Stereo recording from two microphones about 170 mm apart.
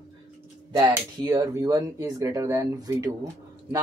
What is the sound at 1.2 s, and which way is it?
Speech, 25° right (ahead or behind).